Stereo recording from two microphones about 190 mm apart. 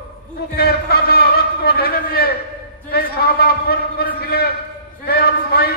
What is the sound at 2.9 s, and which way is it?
A man's voice, 55° left (ahead or behind).